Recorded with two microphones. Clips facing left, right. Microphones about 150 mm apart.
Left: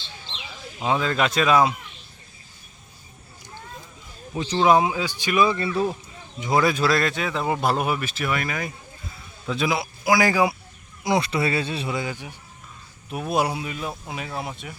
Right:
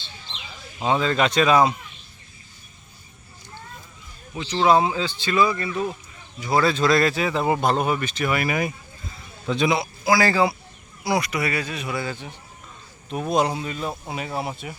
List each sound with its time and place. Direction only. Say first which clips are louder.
0.8 s speech: right 2 dB; centre (ahead or behind)
4.4 s speech: left 2 dB; 30° left (ahead or behind)
4.6 s speech: even; 15° left (ahead or behind)
5.5 s speech: left 2 dB; 30° left (ahead or behind)
6.4 s speech: even; 15° left (ahead or behind)
6.9 s speech: right 3 dB; centre (ahead or behind)
9.5 s speech: right 3 dB; centre (ahead or behind)
10.1 s speech: even; 15° left (ahead or behind)
11.0 s speech: left 1 dB; 25° left (ahead or behind)
11.9 s speech: even; 15° left (ahead or behind); by 14.8 s centre (ahead or behind)